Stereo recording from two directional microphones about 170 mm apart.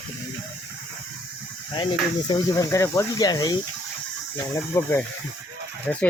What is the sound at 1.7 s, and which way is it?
Speech, 25° left (ahead or behind).